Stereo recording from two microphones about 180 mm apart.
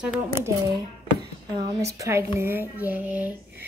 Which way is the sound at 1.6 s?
20° right (ahead or behind).